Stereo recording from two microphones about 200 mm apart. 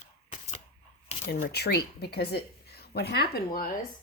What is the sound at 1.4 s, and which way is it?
A woman's voice, 55° left (ahead or behind).